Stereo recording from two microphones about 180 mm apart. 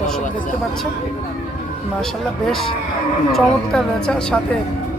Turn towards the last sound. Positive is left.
turn(degrees=5)  # may be behind; listen again after turning